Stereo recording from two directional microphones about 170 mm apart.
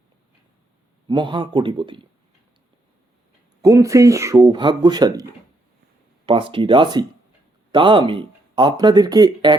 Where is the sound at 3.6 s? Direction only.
20° right (ahead or behind).